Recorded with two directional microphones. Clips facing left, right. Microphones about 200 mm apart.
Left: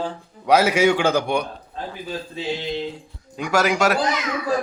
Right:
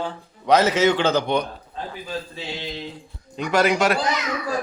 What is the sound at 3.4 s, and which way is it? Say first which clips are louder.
Speech: even; 10° left (ahead or behind).